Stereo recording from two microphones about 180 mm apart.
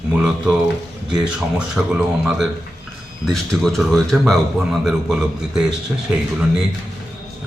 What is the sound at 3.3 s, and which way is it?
A man's voice, centre (ahead or behind).